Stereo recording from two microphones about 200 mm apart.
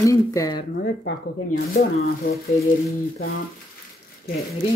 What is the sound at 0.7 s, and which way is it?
Speech, 55° left (ahead or behind).